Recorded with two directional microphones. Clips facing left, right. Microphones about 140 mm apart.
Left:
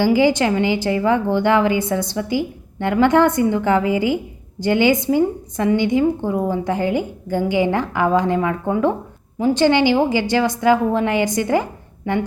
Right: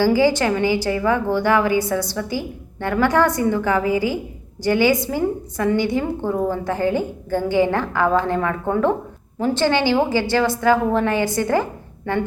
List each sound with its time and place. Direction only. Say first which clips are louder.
0.0 s a woman's voice: left 1 dB; 15° left (ahead or behind)